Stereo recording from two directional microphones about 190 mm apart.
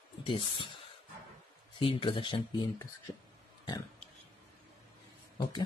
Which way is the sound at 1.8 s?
25° left (ahead or behind).